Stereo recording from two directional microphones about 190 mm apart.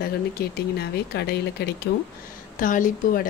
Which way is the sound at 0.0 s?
55° left (ahead or behind).